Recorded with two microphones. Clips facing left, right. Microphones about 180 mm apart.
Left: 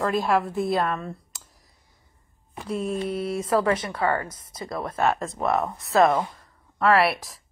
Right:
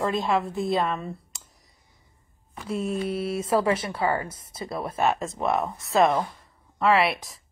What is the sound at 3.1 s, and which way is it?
A woman's voice, 25° right (ahead or behind).